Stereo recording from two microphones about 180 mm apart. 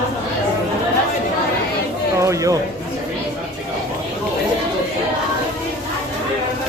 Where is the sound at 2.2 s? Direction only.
15° right (ahead or behind).